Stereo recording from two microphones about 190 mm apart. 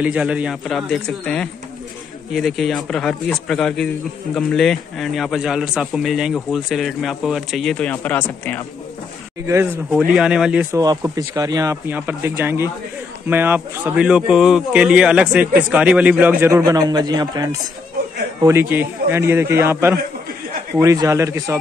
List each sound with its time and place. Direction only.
0.0 s a man's voice: 5° right (ahead or behind)
9.5 s speech: 10° right (ahead or behind)
10.8 s speech: 20° right (ahead or behind)